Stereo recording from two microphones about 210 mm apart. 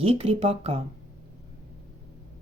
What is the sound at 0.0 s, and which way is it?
Speech, 25° right (ahead or behind).